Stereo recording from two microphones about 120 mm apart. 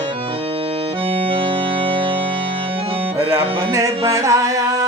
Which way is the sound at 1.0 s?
50° right (ahead or behind).